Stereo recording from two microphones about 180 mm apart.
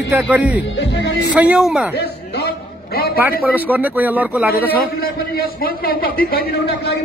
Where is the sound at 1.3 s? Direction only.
5° right (ahead or behind).